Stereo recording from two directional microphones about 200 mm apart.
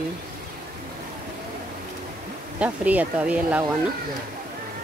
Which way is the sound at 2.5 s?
5° right (ahead or behind).